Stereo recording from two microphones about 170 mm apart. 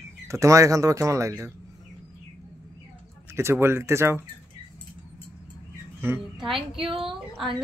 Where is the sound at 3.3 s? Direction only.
15° right (ahead or behind).